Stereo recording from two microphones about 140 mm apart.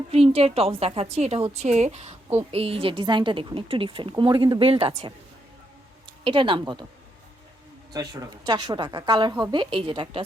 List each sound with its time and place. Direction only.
0.1 s a woman's voice: 45° right (ahead or behind)
6.2 s a woman's voice: 35° right (ahead or behind)
8.4 s a woman's voice: 30° right (ahead or behind)